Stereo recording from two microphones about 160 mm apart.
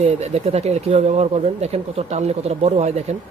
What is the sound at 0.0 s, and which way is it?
Speech, 40° right (ahead or behind).